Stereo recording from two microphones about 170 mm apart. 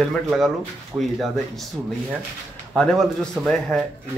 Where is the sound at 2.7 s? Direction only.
5° left (ahead or behind).